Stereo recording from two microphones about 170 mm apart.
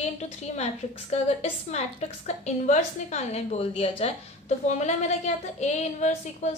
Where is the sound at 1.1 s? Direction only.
40° left (ahead or behind).